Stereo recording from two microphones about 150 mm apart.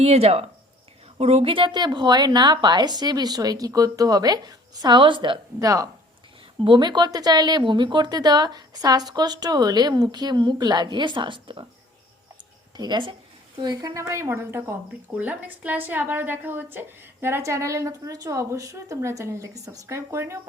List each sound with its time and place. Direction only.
0.0 s speech: 45° right (ahead or behind)
12.7 s a woman's voice: 30° right (ahead or behind)